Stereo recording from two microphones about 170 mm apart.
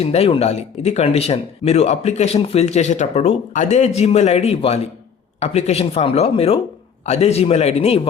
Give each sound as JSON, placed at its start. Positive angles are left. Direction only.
{"t": 0.0, "sound": "speech", "side_deg": 35}